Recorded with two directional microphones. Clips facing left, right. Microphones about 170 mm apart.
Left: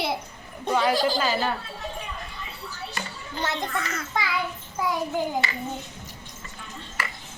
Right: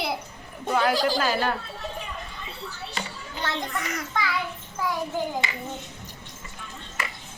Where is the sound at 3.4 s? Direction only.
20° left (ahead or behind).